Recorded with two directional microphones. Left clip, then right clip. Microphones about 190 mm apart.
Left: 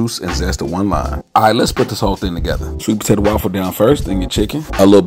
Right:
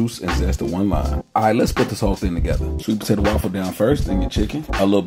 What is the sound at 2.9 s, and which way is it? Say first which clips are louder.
Speech: left 6 dB; 20° left (ahead or behind).